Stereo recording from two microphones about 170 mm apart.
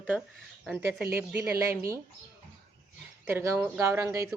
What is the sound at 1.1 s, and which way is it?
Speech, 15° right (ahead or behind).